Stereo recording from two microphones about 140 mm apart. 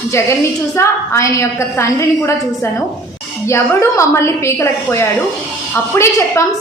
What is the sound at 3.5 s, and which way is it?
A woman's voice, 20° left (ahead or behind).